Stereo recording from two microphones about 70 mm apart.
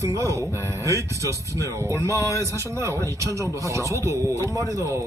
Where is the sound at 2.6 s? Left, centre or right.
Right.